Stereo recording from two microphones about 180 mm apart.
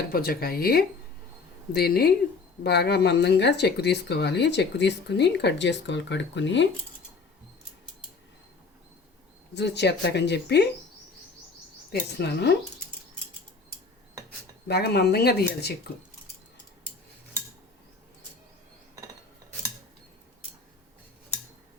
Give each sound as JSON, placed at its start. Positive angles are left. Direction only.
{"t": 0.1, "sound": "speech", "side_deg": 55}
{"t": 9.6, "sound": "speech", "side_deg": 70}
{"t": 12.1, "sound": "speech", "side_deg": 70}
{"t": 14.7, "sound": "speech", "side_deg": 65}